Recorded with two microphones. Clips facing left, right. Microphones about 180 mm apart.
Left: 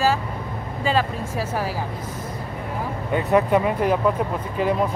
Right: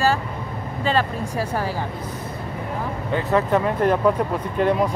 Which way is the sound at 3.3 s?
10° left (ahead or behind).